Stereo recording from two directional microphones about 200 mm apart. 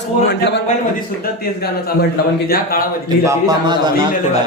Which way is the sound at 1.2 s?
50° left (ahead or behind).